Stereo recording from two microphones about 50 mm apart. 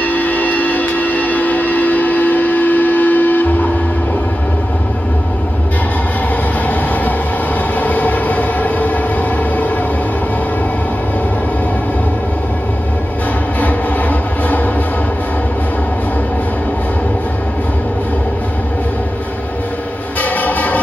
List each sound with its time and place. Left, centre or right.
0.0 s train: left
7.8 s train: left
13.6 s train: left
20.2 s train: left